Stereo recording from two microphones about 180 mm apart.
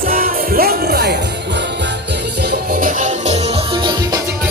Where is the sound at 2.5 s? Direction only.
50° right (ahead or behind).